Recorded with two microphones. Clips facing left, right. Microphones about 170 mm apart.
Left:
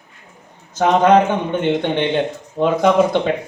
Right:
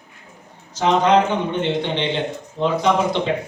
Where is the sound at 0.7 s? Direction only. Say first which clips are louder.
Left 3 dB; 50° left (ahead or behind).